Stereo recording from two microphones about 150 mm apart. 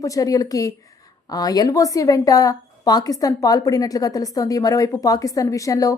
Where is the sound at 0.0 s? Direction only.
20° left (ahead or behind).